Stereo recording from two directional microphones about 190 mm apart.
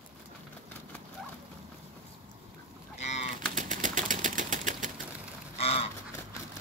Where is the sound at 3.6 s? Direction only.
45° right (ahead or behind).